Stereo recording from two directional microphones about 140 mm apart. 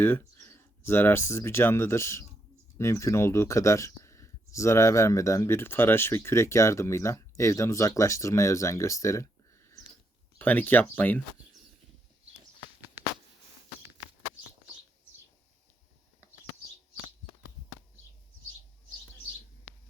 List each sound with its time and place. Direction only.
0.0 s speech: 15° left (ahead or behind)
10.3 s speech: 15° left (ahead or behind)